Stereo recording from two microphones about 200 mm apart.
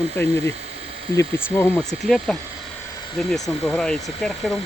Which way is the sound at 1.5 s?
15° left (ahead or behind).